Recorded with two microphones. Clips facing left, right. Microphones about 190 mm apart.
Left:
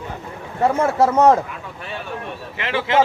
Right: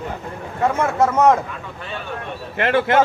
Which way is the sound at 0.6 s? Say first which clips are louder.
Left 1 dB; 35° left (ahead or behind).